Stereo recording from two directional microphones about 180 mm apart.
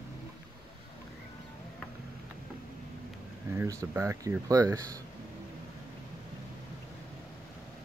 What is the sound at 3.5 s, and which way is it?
Speech, 15° right (ahead or behind).